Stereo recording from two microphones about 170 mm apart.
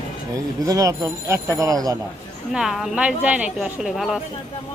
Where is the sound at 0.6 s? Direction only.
20° right (ahead or behind).